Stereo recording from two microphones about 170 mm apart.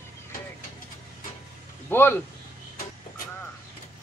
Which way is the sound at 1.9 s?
15° left (ahead or behind).